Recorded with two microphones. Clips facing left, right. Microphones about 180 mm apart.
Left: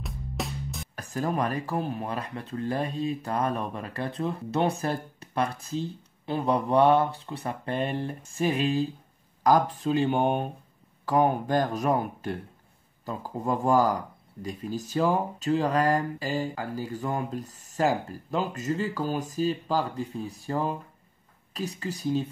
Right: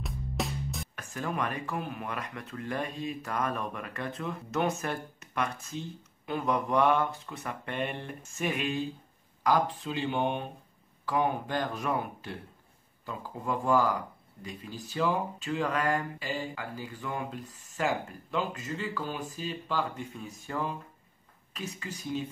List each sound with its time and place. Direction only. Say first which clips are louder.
0.0 s music: even; centre (ahead or behind)
0.9 s speech: left 6 dB; 35° left (ahead or behind)
9.4 s speech: left 5 dB; 45° left (ahead or behind)